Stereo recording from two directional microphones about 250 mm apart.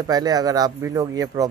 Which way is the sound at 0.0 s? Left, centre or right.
Centre.